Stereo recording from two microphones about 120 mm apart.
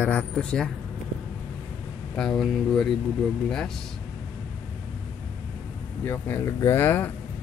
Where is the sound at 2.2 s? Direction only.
5° left (ahead or behind).